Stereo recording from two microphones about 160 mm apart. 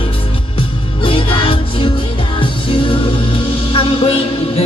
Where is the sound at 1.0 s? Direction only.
35° left (ahead or behind).